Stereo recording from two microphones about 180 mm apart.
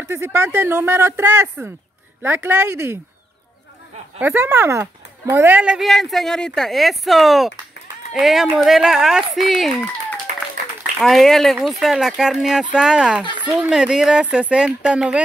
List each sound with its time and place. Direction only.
0.1 s speech: 15° right (ahead or behind)
4.2 s speech: 10° right (ahead or behind)
10.3 s applause: 45° right (ahead or behind)
11.0 s speech: centre (ahead or behind)